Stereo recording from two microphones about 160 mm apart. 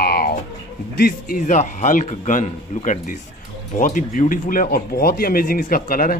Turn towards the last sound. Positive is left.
turn(degrees=65)  # may be behind; listen again after turning